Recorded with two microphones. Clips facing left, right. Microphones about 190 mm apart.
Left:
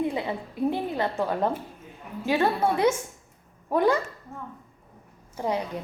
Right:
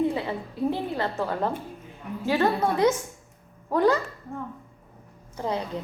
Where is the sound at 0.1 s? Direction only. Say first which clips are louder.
Even; 15° left (ahead or behind).